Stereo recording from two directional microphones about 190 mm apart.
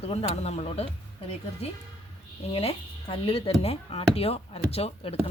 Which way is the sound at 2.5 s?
30° left (ahead or behind).